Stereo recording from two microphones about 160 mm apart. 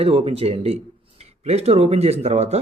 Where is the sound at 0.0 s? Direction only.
35° right (ahead or behind).